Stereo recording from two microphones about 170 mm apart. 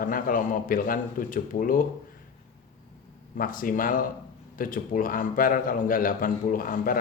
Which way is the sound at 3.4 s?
55° left (ahead or behind).